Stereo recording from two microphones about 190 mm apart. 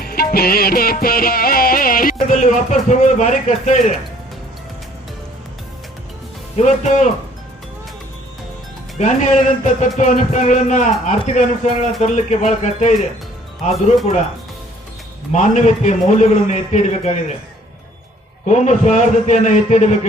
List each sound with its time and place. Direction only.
0.0 s music: 50° left (ahead or behind)
6.6 s a man's voice: 35° left (ahead or behind)
9.0 s a man's voice: 35° left (ahead or behind)
15.3 s a man's voice: 40° left (ahead or behind)
18.4 s a man's voice: 40° left (ahead or behind)